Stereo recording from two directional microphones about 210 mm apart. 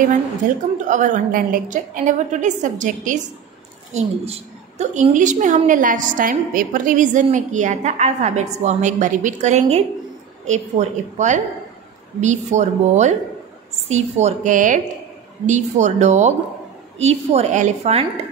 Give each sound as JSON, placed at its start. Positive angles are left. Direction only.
{"t": 0.4, "sound": "a woman's voice", "side_deg": -40}